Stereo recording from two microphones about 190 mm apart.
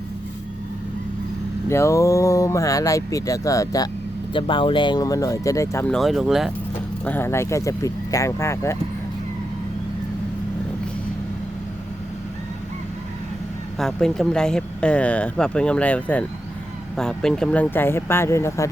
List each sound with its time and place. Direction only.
1.7 s speech: 15° left (ahead or behind); by 6.5 s centre (ahead or behind)
7.0 s speech: 10° left (ahead or behind)
13.7 s speech: centre (ahead or behind)